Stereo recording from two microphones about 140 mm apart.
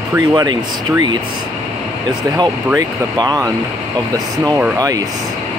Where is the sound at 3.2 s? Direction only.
30° right (ahead or behind).